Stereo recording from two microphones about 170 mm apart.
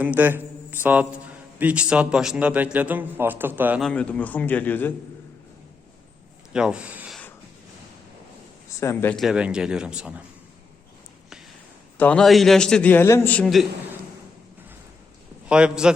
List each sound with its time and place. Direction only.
0.0 s a man's voice: 10° right (ahead or behind)
3.8 s a man's voice: 5° left (ahead or behind)
6.5 s speech: 5° right (ahead or behind)
8.8 s a man's voice: 15° left (ahead or behind)
9.1 s a man's voice: 5° right (ahead or behind)
11.9 s a man's voice: 5° left (ahead or behind)
15.4 s a man's voice: 5° right (ahead or behind)